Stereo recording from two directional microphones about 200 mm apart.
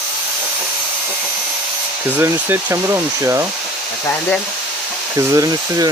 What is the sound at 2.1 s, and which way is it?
Speech, 10° right (ahead or behind).